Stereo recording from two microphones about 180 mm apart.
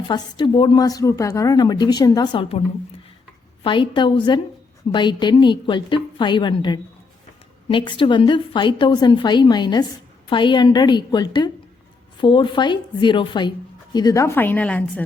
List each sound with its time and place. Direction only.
0.1 s a woman's voice: 25° left (ahead or behind); by 15.0 s 10° left (ahead or behind)